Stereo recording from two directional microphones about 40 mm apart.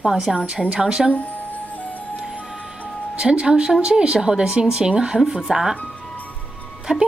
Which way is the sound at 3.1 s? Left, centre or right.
Right.